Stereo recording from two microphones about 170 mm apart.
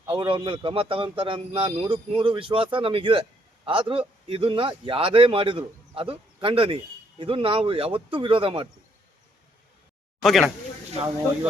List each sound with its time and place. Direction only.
0.1 s a man's voice: 30° right (ahead or behind)
10.2 s speech: centre (ahead or behind)